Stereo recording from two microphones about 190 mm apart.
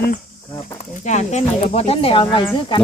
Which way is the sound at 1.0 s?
40° left (ahead or behind).